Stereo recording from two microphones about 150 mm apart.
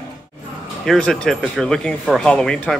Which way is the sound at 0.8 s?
5° left (ahead or behind).